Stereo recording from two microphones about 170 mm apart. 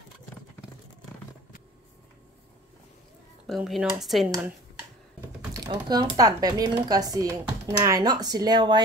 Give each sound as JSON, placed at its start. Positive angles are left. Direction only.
{"t": 3.4, "sound": "speech", "side_deg": 0}
{"t": 5.5, "sound": "speech", "side_deg": -25}